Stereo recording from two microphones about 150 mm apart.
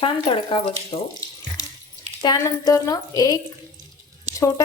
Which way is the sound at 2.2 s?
25° left (ahead or behind).